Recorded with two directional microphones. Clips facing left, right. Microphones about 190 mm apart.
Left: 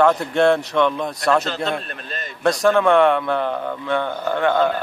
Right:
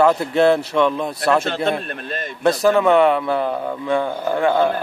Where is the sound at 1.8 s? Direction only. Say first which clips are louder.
Right 5 dB; 50° right (ahead or behind).